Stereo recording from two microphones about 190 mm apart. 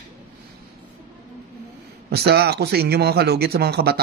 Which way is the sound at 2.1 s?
60° right (ahead or behind).